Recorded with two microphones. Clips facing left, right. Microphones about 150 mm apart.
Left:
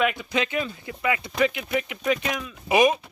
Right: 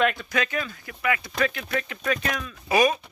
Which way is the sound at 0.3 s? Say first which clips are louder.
Left 2 dB; 20° left (ahead or behind).